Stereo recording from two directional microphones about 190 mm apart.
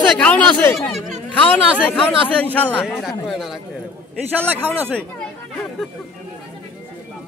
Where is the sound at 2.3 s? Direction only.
10° left (ahead or behind); by 5.0 s 10° right (ahead or behind).